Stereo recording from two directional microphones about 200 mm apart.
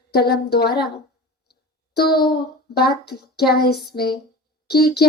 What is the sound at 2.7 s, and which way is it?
Speech, 55° left (ahead or behind).